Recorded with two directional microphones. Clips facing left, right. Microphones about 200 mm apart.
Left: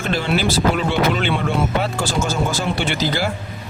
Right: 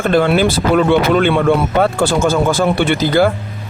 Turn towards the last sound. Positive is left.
turn(degrees=-55)  # may be behind; listen again after turning